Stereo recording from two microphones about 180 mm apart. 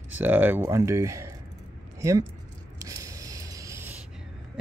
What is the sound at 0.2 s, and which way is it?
Speech, 10° right (ahead or behind).